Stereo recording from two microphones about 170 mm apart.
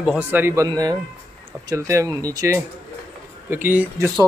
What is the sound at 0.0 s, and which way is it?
Speech, 10° right (ahead or behind).